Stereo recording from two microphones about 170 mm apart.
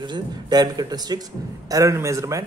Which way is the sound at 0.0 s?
25° right (ahead or behind).